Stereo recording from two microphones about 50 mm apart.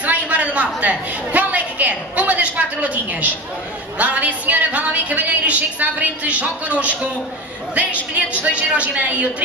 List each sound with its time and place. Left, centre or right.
0.0 s a woman's voice: right
8.5 s a woman's voice: right